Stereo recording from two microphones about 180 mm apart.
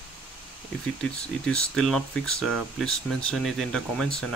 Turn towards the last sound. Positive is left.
turn(degrees=5)  # may be behind; listen again after turning